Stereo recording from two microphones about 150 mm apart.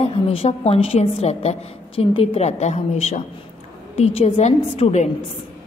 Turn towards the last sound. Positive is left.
turn(degrees=45)  # may be behind; listen again after turning